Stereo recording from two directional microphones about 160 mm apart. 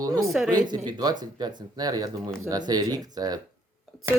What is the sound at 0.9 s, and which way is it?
Speech, 25° right (ahead or behind).